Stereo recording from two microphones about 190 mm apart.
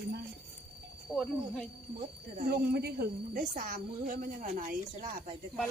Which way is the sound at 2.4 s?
55° right (ahead or behind).